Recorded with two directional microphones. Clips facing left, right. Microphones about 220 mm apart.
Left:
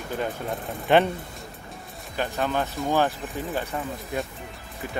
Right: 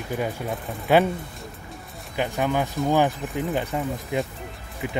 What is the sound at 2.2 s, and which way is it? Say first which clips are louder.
Speech: right 2 dB; 15° right (ahead or behind).